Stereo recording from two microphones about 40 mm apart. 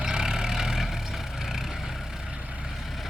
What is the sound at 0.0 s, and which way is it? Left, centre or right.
Vehicle, centre.